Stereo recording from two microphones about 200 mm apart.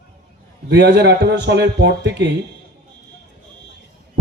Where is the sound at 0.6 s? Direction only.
55° right (ahead or behind).